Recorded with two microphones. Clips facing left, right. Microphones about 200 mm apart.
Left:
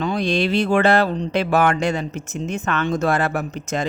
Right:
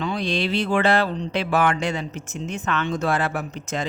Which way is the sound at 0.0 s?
45° left (ahead or behind).